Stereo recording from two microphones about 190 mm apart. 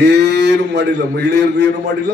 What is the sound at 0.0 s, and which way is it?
A man's voice, 60° right (ahead or behind).